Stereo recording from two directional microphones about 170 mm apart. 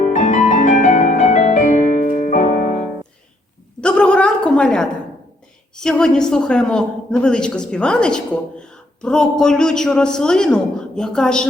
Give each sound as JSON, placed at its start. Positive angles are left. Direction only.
{"t": 0.0, "sound": "music", "side_deg": 45}
{"t": 3.8, "sound": "a sound", "side_deg": 5}
{"t": 5.7, "sound": "a woman's voice", "side_deg": 5}